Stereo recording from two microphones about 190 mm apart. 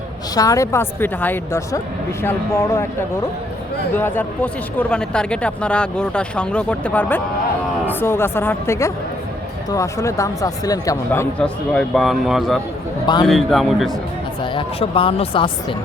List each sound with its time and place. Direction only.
0.3 s speech: 15° left (ahead or behind)
3.9 s speech: 10° left (ahead or behind)
14.5 s speech: 30° left (ahead or behind)